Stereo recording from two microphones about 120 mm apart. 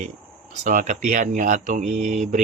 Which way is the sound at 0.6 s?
90° right.